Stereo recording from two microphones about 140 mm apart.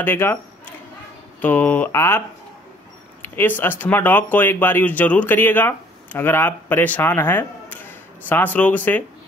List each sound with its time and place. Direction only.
0.0 s speech: 15° left (ahead or behind)
1.4 s speech: 10° left (ahead or behind)